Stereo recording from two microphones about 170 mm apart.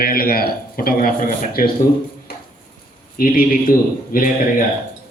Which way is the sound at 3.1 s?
55° left (ahead or behind).